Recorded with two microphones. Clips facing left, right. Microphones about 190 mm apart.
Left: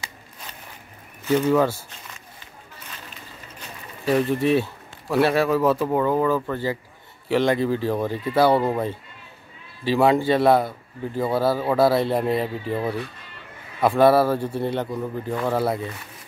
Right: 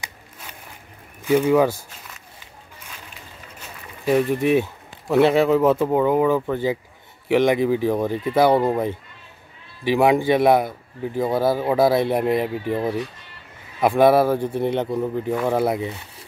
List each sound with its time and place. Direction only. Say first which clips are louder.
1.2 s speech: right 2 dB; 10° right (ahead or behind)
3.5 s speech: left 1 dB; 10° right (ahead or behind)